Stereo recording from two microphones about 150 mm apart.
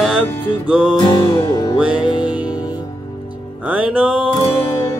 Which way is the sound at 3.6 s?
10° right (ahead or behind).